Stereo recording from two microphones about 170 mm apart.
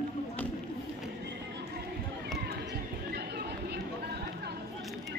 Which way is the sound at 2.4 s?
70° right (ahead or behind).